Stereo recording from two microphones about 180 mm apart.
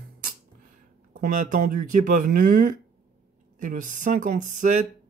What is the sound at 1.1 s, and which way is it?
Speech, 50° right (ahead or behind).